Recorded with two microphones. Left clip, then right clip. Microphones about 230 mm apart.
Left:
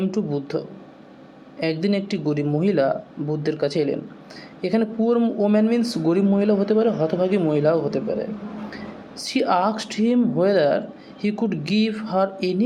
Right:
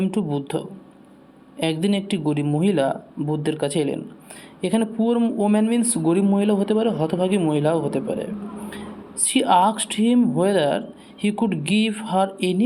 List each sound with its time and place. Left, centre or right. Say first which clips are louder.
0.0 s speech: even; right